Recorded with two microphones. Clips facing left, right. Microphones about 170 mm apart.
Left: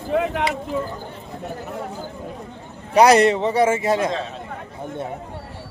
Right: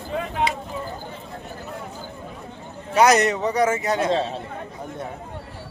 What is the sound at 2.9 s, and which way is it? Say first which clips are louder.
Speech: left 4 dB; 30° left (ahead or behind).